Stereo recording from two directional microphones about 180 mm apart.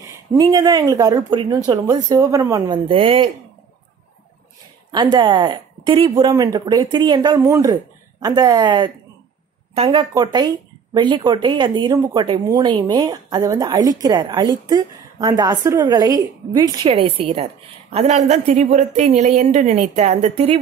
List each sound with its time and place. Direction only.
0.0 s speech: 20° right (ahead or behind)
2.9 s speech: 30° right (ahead or behind)
4.9 s speech: 25° right (ahead or behind)